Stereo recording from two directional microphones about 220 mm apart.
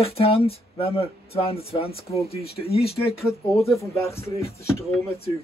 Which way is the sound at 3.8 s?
15° left (ahead or behind).